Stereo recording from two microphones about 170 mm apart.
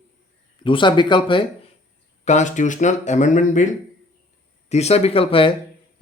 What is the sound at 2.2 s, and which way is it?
Speech, 45° left (ahead or behind).